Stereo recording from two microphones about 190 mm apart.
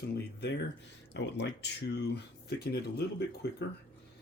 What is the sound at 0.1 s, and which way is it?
Speech, 60° left (ahead or behind).